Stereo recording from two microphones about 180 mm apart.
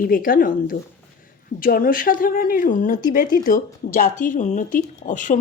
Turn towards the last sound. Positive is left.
turn(degrees=45)  # may be behind; listen again after turning